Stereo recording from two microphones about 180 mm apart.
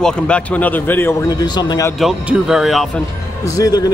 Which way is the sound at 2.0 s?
Centre (ahead or behind).